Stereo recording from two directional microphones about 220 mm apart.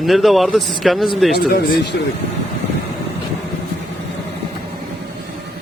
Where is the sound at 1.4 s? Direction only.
45° left (ahead or behind).